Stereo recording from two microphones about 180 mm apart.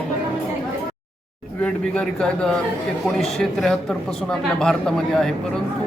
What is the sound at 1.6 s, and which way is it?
A man's voice, 5° left (ahead or behind).